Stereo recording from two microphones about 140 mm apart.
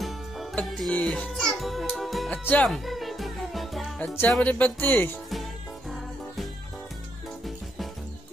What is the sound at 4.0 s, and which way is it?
Music, 15° left (ahead or behind).